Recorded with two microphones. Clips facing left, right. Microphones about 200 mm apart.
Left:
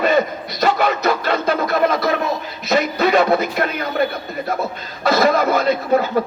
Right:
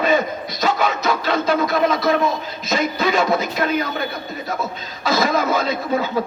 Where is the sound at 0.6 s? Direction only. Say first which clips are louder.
Left 3 dB; 60° left (ahead or behind).